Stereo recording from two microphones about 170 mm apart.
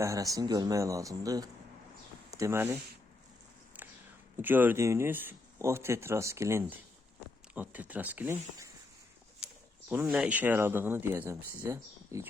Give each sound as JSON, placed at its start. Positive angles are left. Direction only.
{"t": 0.0, "sound": "speech", "side_deg": -20}
{"t": 3.7, "sound": "a sound", "side_deg": -10}
{"t": 4.4, "sound": "speech", "side_deg": -10}
{"t": 9.9, "sound": "speech", "side_deg": -10}